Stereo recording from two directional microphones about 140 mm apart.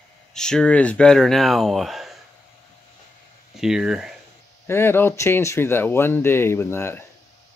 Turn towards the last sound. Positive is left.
turn(degrees=20)  # may be behind; listen again after turning